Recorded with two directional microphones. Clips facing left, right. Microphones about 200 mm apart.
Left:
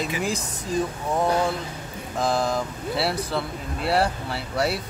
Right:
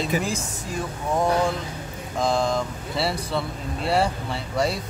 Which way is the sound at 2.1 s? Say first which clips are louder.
Right 1 dB; 5° left (ahead or behind).